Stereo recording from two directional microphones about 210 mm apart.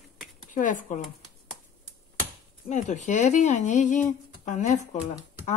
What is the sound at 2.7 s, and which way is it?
Speech, 35° left (ahead or behind).